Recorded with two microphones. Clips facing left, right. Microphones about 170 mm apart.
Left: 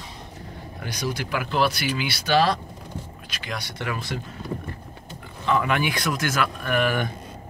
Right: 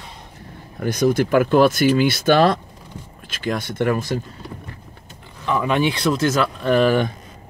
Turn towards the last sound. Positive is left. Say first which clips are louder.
# right 7 dB
turn(degrees=-30)  # may be behind; listen again after turning